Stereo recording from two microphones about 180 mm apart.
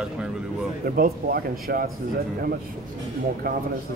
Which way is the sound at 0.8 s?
55° right (ahead or behind).